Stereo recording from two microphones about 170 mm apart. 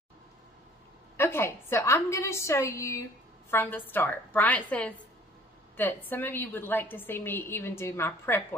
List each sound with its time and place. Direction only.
1.1 s a woman's voice: 15° left (ahead or behind)